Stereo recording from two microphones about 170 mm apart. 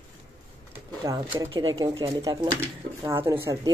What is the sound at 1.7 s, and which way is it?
Speech, 20° right (ahead or behind).